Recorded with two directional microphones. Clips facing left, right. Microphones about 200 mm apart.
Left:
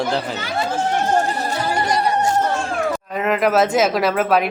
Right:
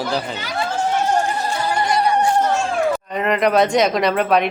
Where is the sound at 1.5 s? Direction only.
40° left (ahead or behind).